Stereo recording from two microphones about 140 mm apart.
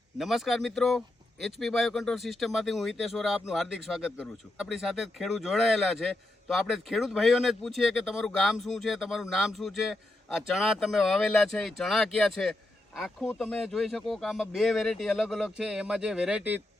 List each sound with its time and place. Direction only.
0.2 s speech: centre (ahead or behind)